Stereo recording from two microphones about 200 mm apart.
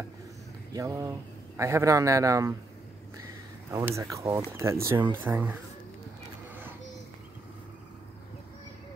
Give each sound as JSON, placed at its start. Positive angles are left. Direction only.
{"t": 0.7, "sound": "a man's voice", "side_deg": -15}
{"t": 3.7, "sound": "a man's voice", "side_deg": -15}